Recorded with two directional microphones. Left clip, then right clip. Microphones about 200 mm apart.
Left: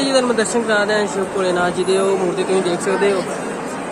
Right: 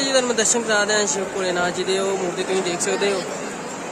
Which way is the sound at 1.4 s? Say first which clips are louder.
Left 4 dB; centre (ahead or behind).